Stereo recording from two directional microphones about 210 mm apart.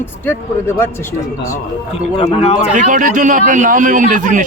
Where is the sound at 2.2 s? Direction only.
30° left (ahead or behind).